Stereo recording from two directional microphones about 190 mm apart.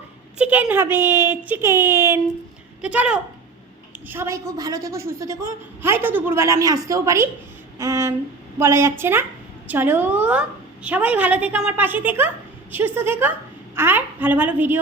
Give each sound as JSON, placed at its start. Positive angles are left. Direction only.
{"t": 0.3, "sound": "a woman's voice", "side_deg": -10}